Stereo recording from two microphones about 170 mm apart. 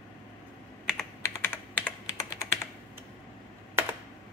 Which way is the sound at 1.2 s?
10° left (ahead or behind).